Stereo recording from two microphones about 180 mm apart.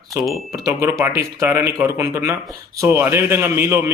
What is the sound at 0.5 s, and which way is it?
Speech, 20° right (ahead or behind).